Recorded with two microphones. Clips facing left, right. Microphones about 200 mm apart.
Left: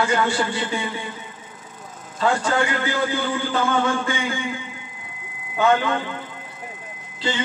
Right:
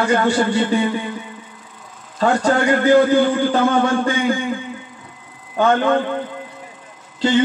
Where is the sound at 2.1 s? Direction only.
40° right (ahead or behind).